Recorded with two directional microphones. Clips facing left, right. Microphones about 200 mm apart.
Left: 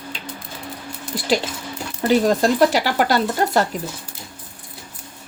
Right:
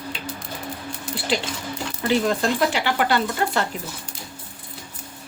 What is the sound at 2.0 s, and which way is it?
Speech, 40° left (ahead or behind).